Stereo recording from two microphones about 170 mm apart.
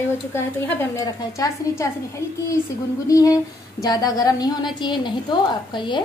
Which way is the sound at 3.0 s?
20° left (ahead or behind).